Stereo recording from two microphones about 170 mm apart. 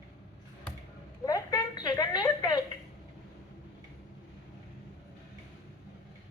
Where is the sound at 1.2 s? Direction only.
20° left (ahead or behind).